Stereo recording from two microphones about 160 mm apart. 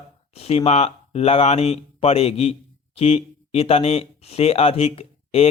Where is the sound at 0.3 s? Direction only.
40° left (ahead or behind).